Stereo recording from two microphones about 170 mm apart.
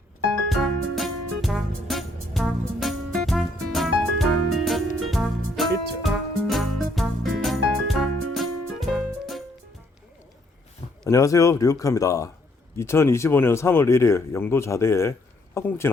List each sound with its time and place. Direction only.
0.4 s music: centre (ahead or behind)
11.1 s speech: 20° left (ahead or behind)